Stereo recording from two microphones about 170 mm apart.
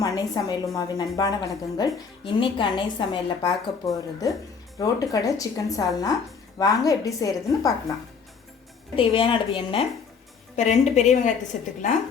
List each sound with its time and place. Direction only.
0.0 s a woman's voice: 20° left (ahead or behind)
9.0 s a woman's voice: 30° left (ahead or behind)
10.5 s a woman's voice: 40° left (ahead or behind)